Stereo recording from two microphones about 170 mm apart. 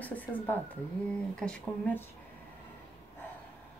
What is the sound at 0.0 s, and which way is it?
Speech, 10° left (ahead or behind).